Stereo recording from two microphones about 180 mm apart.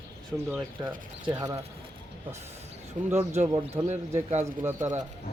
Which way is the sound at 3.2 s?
40° right (ahead or behind).